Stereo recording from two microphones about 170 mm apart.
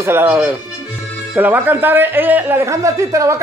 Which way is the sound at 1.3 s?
10° right (ahead or behind).